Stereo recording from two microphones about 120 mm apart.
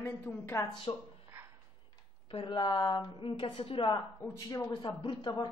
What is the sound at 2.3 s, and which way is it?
A woman's voice, 45° left (ahead or behind).